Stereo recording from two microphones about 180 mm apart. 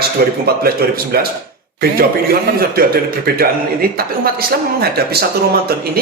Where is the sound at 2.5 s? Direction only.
55° right (ahead or behind).